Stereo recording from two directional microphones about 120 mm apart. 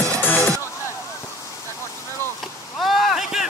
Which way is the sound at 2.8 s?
Centre (ahead or behind).